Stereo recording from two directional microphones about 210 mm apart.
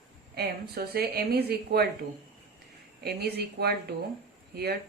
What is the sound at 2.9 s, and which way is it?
Speech, 50° right (ahead or behind).